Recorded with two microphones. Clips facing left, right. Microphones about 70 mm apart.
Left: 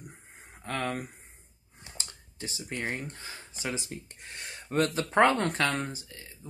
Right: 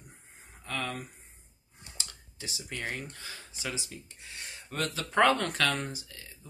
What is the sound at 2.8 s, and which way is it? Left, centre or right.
Speech, left.